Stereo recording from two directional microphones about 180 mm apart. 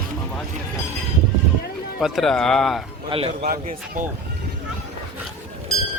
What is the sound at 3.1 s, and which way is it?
Speech, 35° right (ahead or behind).